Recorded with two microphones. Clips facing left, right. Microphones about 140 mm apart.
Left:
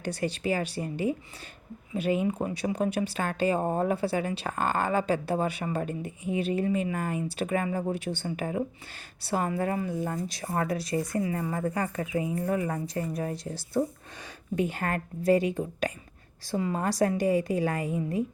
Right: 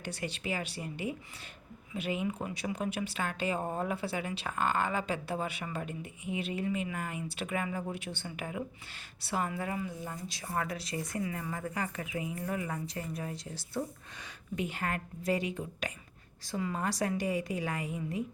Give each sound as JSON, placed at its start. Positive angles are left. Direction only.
{"t": 0.0, "sound": "a woman's voice", "side_deg": 40}
{"t": 10.5, "sound": "speech", "side_deg": 35}